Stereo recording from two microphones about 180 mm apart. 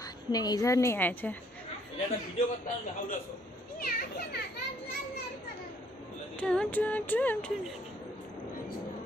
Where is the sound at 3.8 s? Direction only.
55° left (ahead or behind).